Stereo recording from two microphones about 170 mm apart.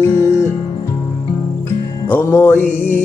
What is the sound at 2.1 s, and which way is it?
Music, 15° left (ahead or behind).